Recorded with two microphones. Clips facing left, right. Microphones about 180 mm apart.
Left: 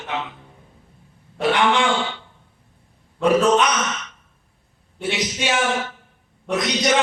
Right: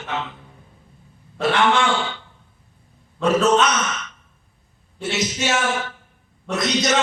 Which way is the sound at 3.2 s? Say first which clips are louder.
Left 1 dB; 15° left (ahead or behind).